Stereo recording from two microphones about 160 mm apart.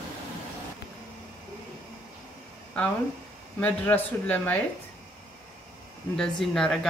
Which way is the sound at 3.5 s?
10° left (ahead or behind).